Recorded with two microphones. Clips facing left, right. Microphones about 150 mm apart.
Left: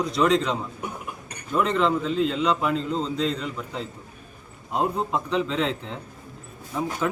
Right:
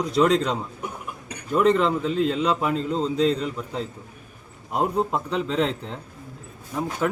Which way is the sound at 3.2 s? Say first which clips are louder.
Right 5 dB; 40° right (ahead or behind).